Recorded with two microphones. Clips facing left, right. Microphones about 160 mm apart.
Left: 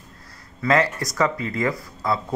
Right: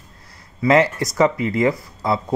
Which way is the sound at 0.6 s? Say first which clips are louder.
Right 5 dB; 25° right (ahead or behind).